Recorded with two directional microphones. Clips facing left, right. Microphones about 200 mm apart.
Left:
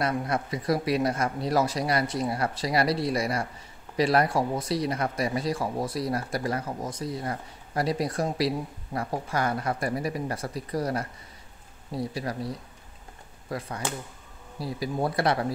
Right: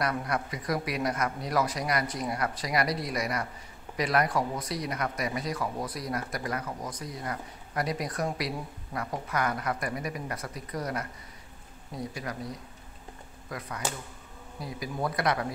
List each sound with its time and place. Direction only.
0.0 s speech: 25° left (ahead or behind)